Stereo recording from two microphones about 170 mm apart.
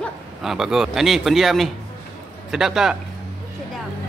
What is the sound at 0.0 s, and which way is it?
Speech, centre (ahead or behind).